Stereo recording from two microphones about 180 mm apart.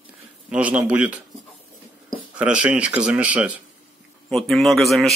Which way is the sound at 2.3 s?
5° right (ahead or behind).